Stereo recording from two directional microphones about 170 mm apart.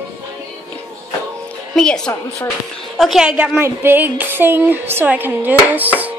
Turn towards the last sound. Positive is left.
turn(degrees=-10)  # may be behind; listen again after turning